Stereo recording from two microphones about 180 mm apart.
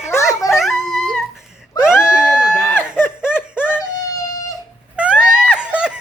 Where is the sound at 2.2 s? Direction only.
5° right (ahead or behind).